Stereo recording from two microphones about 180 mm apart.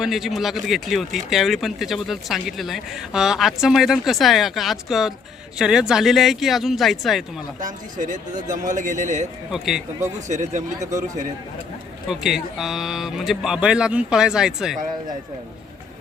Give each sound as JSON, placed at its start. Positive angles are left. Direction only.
{"t": 0.0, "sound": "speech", "side_deg": 0}
{"t": 7.6, "sound": "a man's voice", "side_deg": -45}
{"t": 9.5, "sound": "speech", "side_deg": 0}
{"t": 10.2, "sound": "speech", "side_deg": -40}
{"t": 12.0, "sound": "speech", "side_deg": 0}